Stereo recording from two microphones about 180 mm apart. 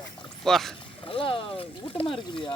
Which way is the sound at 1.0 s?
30° left (ahead or behind).